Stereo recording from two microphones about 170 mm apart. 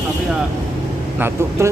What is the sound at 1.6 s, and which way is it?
Speech, 15° right (ahead or behind).